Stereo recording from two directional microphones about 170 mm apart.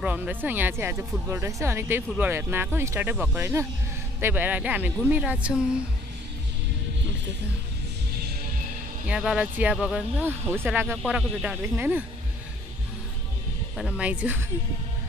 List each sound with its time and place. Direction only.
0.0 s speech: 10° right (ahead or behind)
9.0 s speech: 5° right (ahead or behind)
13.7 s speech: 5° right (ahead or behind)